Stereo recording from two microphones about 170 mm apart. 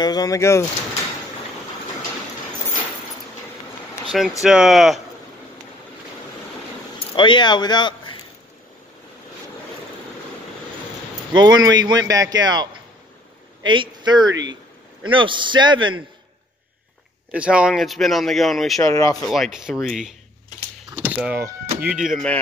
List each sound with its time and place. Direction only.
0.0 s speech: 20° left (ahead or behind)
4.1 s speech: centre (ahead or behind)
7.0 s speech: 30° left (ahead or behind)
11.3 s a man's voice: 25° right (ahead or behind)
13.7 s a man's voice: 25° right (ahead or behind)
17.3 s speech: 5° right (ahead or behind)
18.8 s speech: 20° left (ahead or behind)
19.2 s speech: centre (ahead or behind)
20.9 s power windows: 10° right (ahead or behind)
21.9 s speech: centre (ahead or behind)